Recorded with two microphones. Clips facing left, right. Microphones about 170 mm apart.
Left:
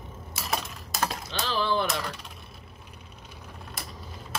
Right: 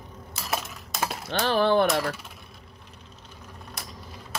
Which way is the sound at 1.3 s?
55° right (ahead or behind).